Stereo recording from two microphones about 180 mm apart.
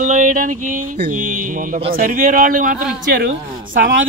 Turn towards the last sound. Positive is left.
turn(degrees=-55)  # may be behind; listen again after turning